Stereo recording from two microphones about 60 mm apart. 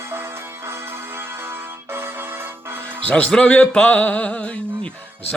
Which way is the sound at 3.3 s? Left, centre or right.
Left.